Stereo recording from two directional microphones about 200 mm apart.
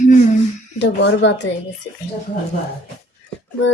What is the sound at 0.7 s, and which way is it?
Child singing, 65° left (ahead or behind).